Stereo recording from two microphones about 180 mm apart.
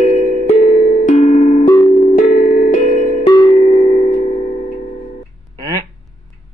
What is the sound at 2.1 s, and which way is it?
Tubular bells, 45° left (ahead or behind).